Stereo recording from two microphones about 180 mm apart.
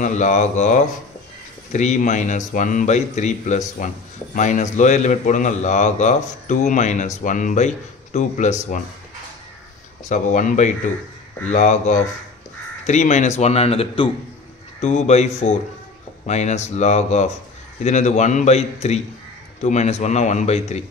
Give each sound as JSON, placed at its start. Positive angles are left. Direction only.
{"t": 0.0, "sound": "a man's voice", "side_deg": 45}
{"t": 10.0, "sound": "a man's voice", "side_deg": 45}